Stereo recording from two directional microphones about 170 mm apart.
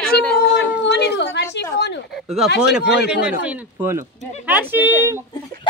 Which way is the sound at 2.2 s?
Centre (ahead or behind).